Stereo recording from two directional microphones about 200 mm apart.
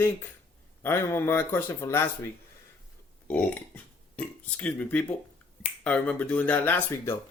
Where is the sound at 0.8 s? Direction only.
10° left (ahead or behind).